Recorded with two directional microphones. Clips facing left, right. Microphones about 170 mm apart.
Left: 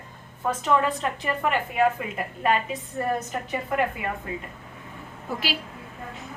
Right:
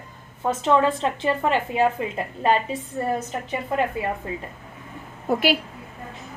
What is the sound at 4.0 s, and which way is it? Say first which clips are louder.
Speech: right 4 dB; 35° right (ahead or behind).